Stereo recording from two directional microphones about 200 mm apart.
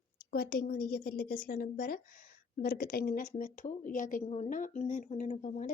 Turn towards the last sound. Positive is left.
turn(degrees=40)  # may be behind; listen again after turning